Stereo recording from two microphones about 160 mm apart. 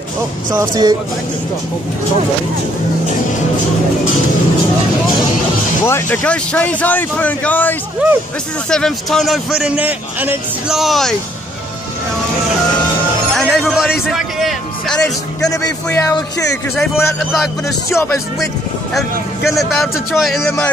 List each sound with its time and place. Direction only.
0.5 s speech: 20° right (ahead or behind)
5.9 s a man's voice: 15° left (ahead or behind)
8.0 s speech: 10° right (ahead or behind)
8.6 s a man's voice: 5° left (ahead or behind)
13.3 s music: centre (ahead or behind)
14.1 s a man's voice: centre (ahead or behind)
16.1 s speech: 20° left (ahead or behind)
17.2 s a man's voice: centre (ahead or behind)
17.8 s a man's voice: 15° left (ahead or behind)
18.9 s a man's voice: centre (ahead or behind)